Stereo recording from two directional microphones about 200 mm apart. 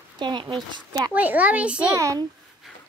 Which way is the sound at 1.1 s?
10° right (ahead or behind).